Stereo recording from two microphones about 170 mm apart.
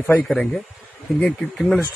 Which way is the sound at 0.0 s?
5° left (ahead or behind).